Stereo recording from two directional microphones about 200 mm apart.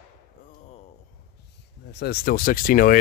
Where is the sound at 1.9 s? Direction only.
55° left (ahead or behind).